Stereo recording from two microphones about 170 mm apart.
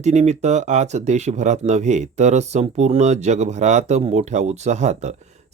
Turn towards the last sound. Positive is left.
turn(degrees=-40)  # may be behind; listen again after turning